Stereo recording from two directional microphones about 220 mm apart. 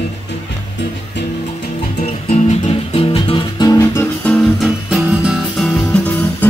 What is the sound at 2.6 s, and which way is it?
Music, 25° left (ahead or behind).